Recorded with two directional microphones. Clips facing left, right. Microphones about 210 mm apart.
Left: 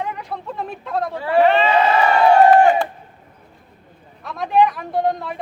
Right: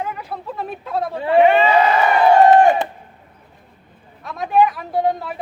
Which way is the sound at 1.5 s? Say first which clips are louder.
Right 2 dB; 10° right (ahead or behind).